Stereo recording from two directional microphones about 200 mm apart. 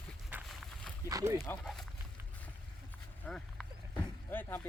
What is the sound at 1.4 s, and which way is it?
Speech, 5° left (ahead or behind).